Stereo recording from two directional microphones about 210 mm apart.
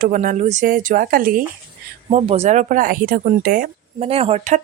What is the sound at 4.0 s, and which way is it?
Speech, 30° right (ahead or behind).